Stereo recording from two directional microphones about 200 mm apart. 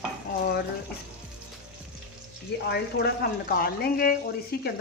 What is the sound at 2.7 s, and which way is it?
A woman's voice, 55° left (ahead or behind).